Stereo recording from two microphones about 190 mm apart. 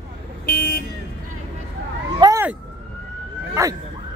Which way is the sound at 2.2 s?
20° right (ahead or behind).